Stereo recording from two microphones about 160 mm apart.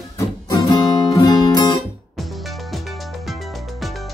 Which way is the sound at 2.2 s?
Centre (ahead or behind).